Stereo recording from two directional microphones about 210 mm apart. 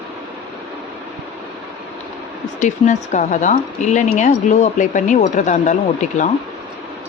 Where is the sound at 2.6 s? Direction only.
35° left (ahead or behind).